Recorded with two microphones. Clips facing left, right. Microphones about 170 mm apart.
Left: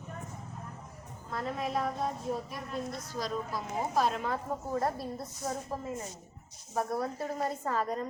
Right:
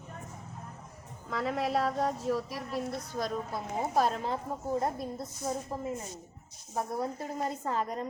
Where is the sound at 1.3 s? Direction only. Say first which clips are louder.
Right 3 dB; 90° right.